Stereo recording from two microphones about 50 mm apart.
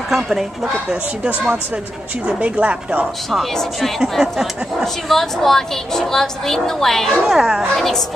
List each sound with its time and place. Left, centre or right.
0.1 s speech: centre
2.2 s a woman's voice: right
3.3 s a woman's voice: centre
4.2 s speech: centre
5.0 s a woman's voice: centre
7.2 s speech: centre
7.7 s a woman's voice: centre